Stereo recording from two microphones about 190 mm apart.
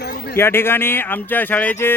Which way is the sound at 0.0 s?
55° left (ahead or behind).